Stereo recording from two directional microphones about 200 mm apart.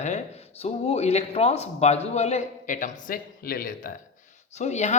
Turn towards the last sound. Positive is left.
turn(degrees=35)  # may be behind; listen again after turning